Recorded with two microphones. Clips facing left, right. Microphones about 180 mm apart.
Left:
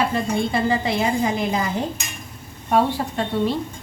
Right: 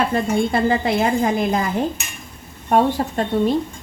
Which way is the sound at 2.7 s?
45° right (ahead or behind).